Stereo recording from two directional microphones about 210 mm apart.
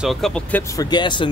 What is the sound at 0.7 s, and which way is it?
Speech, 20° left (ahead or behind).